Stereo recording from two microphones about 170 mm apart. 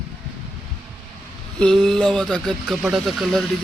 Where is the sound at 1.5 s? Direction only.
5° left (ahead or behind).